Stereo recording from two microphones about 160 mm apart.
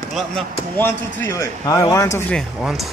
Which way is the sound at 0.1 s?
Centre (ahead or behind).